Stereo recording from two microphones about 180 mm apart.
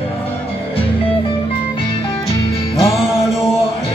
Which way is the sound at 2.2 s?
20° left (ahead or behind).